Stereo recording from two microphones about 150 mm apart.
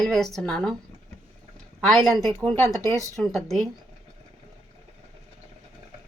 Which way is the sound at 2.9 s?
20° right (ahead or behind).